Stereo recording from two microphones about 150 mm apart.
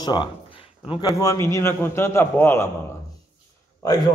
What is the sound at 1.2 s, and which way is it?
A man's voice, 20° left (ahead or behind).